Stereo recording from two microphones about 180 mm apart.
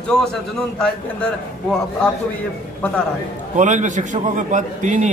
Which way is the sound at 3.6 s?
45° right (ahead or behind).